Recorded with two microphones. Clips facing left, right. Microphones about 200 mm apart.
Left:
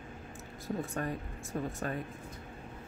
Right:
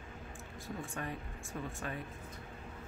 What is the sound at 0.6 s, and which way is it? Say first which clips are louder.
Speech: left 7 dB; 40° left (ahead or behind).